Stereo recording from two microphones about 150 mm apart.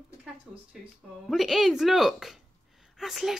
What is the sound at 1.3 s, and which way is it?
A woman's voice, centre (ahead or behind).